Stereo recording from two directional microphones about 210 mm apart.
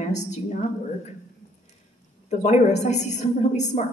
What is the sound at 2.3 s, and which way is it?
A woman's voice, 35° left (ahead or behind).